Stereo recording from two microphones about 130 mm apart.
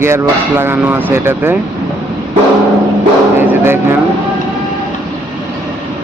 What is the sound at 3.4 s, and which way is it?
Speech, 20° right (ahead or behind).